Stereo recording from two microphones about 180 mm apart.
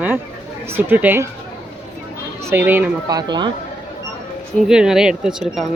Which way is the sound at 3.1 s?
25° right (ahead or behind).